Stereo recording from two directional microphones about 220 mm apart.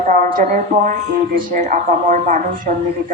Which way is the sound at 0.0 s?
35° right (ahead or behind).